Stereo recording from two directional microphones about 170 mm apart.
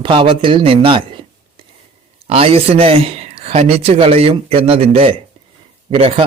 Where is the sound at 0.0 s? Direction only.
30° right (ahead or behind).